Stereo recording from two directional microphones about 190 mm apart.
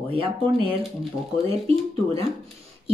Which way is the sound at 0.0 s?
30° right (ahead or behind).